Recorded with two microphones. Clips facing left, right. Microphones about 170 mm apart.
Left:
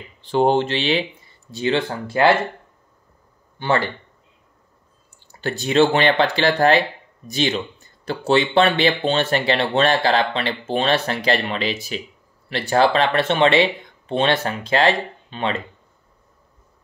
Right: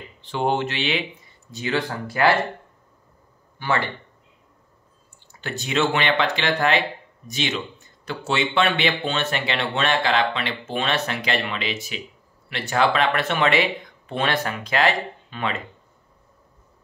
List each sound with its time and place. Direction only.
0.2 s speech: 35° left (ahead or behind)
3.5 s speech: 30° left (ahead or behind)
5.3 s speech: 35° left (ahead or behind)